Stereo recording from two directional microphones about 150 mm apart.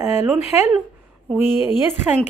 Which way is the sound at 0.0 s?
15° right (ahead or behind).